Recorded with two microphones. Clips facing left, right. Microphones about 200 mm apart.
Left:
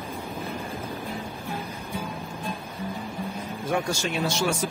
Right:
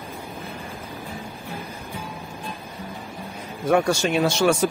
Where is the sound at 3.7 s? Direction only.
70° right (ahead or behind).